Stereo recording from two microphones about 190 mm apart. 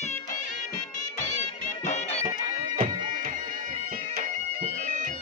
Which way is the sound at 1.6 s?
40° left (ahead or behind).